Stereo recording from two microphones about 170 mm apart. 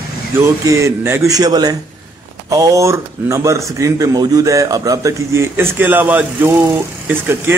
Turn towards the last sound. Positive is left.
turn(degrees=-15)  # may be behind; listen again after turning